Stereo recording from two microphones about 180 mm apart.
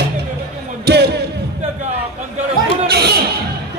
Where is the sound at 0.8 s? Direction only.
65° right (ahead or behind).